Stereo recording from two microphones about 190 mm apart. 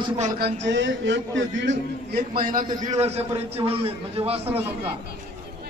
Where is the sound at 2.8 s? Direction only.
35° right (ahead or behind).